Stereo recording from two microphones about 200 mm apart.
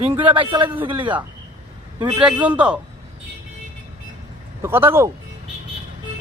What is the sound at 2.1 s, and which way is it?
Speech, 5° right (ahead or behind).